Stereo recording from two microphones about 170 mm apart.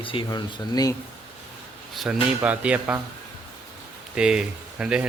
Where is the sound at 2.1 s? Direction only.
5° right (ahead or behind).